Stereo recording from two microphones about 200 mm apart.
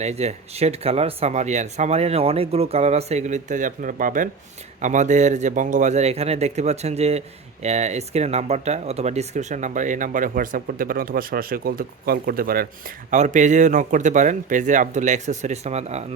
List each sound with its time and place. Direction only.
0.0 s speech: 35° right (ahead or behind)